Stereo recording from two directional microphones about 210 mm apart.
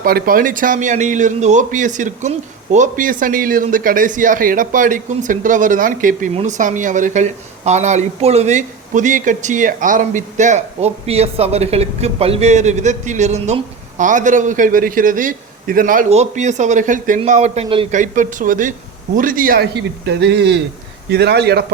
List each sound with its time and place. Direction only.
0.0 s a man's voice: 45° right (ahead or behind)